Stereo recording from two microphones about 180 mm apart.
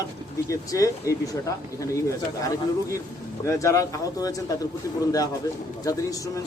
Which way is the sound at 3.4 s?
15° left (ahead or behind).